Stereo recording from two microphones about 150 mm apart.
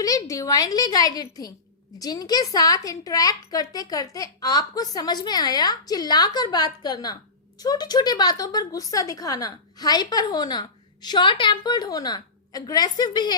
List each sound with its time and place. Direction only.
0.0 s a woman's voice: 25° left (ahead or behind)